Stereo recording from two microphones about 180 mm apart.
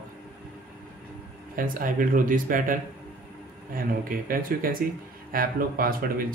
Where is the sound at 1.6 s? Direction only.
50° right (ahead or behind).